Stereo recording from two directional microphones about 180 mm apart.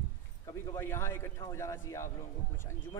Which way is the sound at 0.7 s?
15° left (ahead or behind).